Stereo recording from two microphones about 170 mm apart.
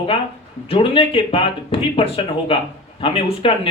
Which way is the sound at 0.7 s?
30° left (ahead or behind).